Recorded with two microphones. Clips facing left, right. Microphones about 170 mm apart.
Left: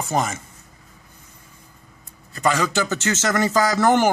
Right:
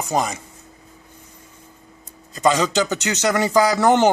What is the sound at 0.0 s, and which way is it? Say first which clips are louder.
Speech: right 1 dB; 15° right (ahead or behind).